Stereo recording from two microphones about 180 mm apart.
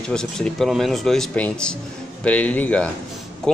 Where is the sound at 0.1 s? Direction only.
5° left (ahead or behind).